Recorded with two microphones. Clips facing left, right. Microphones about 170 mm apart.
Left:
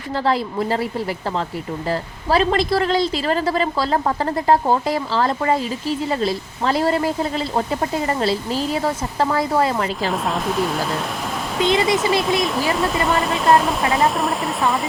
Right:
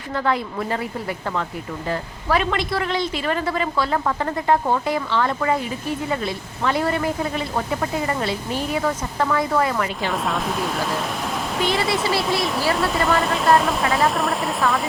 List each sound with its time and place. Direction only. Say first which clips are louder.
1.9 s a woman's voice: left 2 dB; 30° left (ahead or behind)
10.1 s speech: left 2 dB; centre (ahead or behind)
11.6 s speech: left 5 dB; 20° left (ahead or behind)
12.7 s speech: left 1 dB; centre (ahead or behind)